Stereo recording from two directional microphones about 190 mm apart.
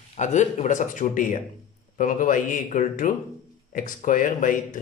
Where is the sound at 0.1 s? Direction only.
40° left (ahead or behind).